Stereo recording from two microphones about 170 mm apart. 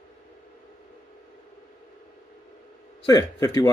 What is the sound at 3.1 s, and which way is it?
Speech, 25° left (ahead or behind).